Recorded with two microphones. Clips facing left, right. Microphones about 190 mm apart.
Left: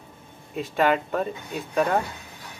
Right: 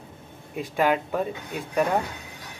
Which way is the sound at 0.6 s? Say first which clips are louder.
Left 1 dB; 5° right (ahead or behind).